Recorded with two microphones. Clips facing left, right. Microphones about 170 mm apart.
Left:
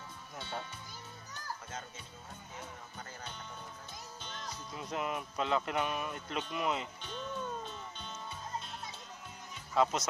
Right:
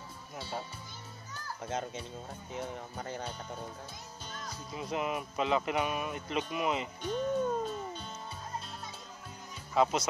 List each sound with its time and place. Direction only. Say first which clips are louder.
0.4 s music: right 3 dB; 5° right (ahead or behind)
1.7 s speech: right 10 dB; 70° right (ahead or behind)
4.7 s speech: right 3 dB; 5° right (ahead or behind)
7.0 s music: right 10 dB; 45° right (ahead or behind)
9.8 s speech: right 2 dB; 5° right (ahead or behind)